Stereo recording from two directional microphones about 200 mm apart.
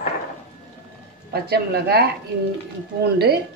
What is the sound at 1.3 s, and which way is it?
Speech, 50° right (ahead or behind).